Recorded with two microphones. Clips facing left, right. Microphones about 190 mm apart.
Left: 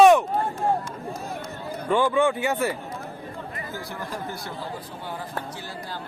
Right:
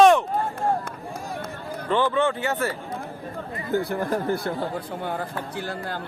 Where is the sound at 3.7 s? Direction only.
60° right (ahead or behind).